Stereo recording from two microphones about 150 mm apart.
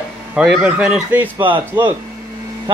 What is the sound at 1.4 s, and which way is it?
Speech, 35° right (ahead or behind).